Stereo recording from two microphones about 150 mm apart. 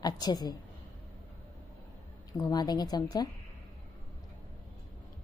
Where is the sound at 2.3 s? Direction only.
25° left (ahead or behind).